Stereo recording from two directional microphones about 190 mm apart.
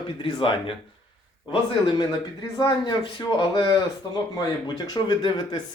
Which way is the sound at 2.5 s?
20° left (ahead or behind).